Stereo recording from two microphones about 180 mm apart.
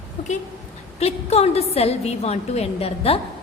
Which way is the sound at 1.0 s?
35° left (ahead or behind).